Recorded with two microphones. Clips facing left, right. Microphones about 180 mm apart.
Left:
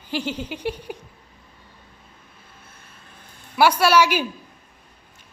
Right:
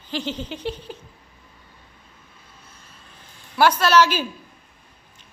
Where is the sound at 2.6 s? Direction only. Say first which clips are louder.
Left 1 dB; 55° left (ahead or behind).